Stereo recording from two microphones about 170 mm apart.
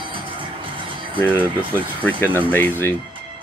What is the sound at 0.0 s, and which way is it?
Music, 30° right (ahead or behind).